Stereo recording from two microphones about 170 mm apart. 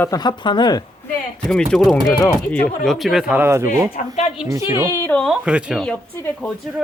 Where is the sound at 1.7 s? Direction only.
Centre (ahead or behind); by 4.9 s 15° right (ahead or behind).